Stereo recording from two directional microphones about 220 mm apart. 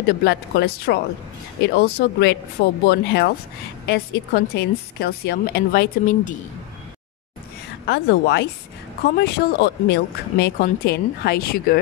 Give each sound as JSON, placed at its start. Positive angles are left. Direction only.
{"t": 0.0, "sound": "speech", "side_deg": 50}
{"t": 7.8, "sound": "speech", "side_deg": 50}